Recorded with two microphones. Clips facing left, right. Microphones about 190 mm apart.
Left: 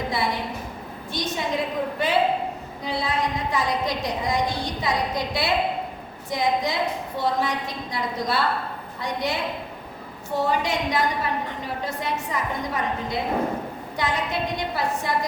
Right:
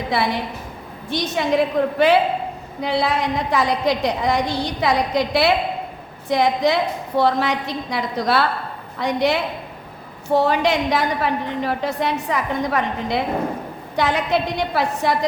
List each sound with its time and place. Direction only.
1.1 s a woman's voice: 70° right (ahead or behind)